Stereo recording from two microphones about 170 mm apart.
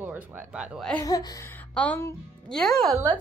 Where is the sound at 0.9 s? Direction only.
20° left (ahead or behind).